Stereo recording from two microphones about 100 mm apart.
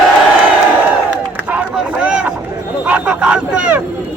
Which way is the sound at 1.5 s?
15° right (ahead or behind).